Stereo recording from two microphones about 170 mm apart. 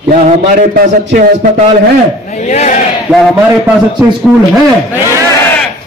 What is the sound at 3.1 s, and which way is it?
Speech, centre (ahead or behind).